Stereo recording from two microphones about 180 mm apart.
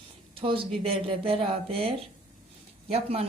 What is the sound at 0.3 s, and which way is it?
Speech, 30° right (ahead or behind).